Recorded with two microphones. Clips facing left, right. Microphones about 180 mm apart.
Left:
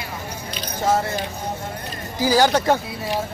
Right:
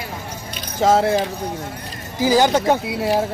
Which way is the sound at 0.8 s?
90° right.